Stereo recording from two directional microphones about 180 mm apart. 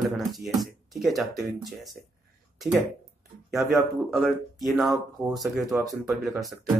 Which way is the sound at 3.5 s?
Centre (ahead or behind).